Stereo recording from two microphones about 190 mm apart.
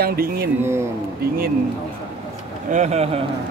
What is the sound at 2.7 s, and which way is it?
Speech, 35° right (ahead or behind).